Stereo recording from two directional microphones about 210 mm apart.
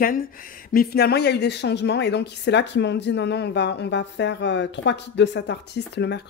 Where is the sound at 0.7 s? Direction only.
50° left (ahead or behind).